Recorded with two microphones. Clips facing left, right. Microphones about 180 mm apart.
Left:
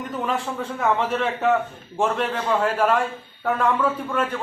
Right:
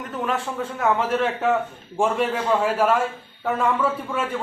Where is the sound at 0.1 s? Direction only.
Centre (ahead or behind).